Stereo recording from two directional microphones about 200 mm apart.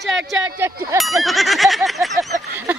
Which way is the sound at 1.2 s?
Centre (ahead or behind).